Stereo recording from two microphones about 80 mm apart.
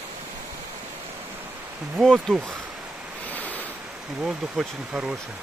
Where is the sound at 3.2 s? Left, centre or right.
Left.